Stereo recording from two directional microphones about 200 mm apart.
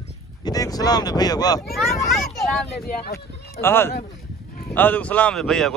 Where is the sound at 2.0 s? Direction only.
Centre (ahead or behind).